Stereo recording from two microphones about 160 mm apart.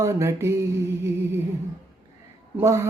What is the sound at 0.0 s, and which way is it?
Speech, 15° right (ahead or behind).